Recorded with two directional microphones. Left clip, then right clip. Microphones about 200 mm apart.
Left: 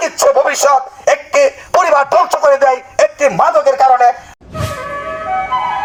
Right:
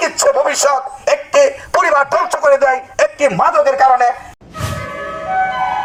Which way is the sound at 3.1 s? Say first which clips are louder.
Left 1 dB; 10° right (ahead or behind).